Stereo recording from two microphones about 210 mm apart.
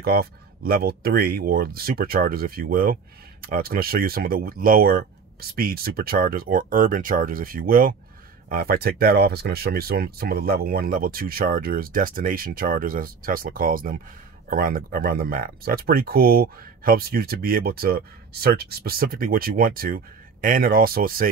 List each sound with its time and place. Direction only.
0.0 s speech: 45° right (ahead or behind)